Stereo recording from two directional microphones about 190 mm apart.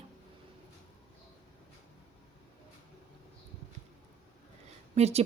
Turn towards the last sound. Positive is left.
turn(degrees=-35)  # may be behind; listen again after turning